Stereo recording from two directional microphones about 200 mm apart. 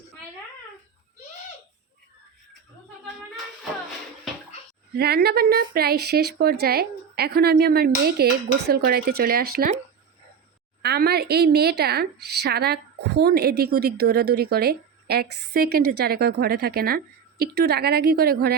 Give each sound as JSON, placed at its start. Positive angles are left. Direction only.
{"t": 4.9, "sound": "a woman's voice", "side_deg": -50}
{"t": 10.8, "sound": "a woman's voice", "side_deg": -55}